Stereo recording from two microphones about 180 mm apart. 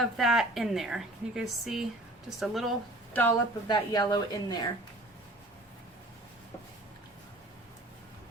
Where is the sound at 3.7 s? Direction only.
25° left (ahead or behind).